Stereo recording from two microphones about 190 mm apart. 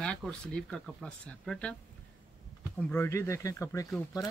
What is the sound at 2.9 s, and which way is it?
Speech, 15° left (ahead or behind).